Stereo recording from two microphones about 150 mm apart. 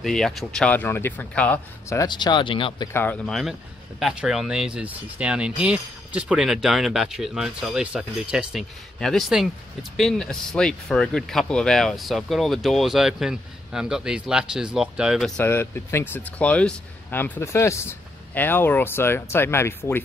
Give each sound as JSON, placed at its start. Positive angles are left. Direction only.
{"t": 0.0, "sound": "speech", "side_deg": 5}
{"t": 1.9, "sound": "speech", "side_deg": 25}
{"t": 2.9, "sound": "speech", "side_deg": 15}
{"t": 3.3, "sound": "speech", "side_deg": 0}
{"t": 15.4, "sound": "speech", "side_deg": 15}